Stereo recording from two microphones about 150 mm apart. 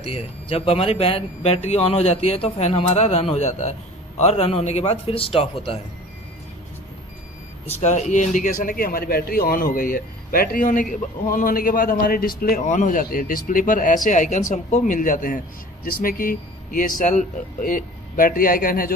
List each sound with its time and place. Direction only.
0.0 s speech: 40° left (ahead or behind)
7.8 s speech: 50° left (ahead or behind); by 12.6 s 75° left (ahead or behind)
12.6 s speech: 55° left (ahead or behind)
15.8 s speech: 75° left (ahead or behind)